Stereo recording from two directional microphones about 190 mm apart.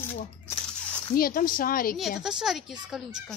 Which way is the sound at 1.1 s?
50° left (ahead or behind).